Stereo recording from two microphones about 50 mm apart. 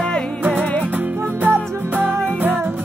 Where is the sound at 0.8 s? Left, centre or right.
Right.